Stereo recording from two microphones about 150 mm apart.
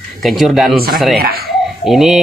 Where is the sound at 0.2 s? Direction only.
Centre (ahead or behind).